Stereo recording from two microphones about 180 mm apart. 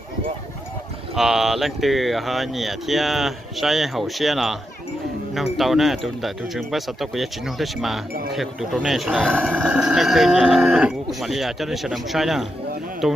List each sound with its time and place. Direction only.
1.1 s speech: centre (ahead or behind)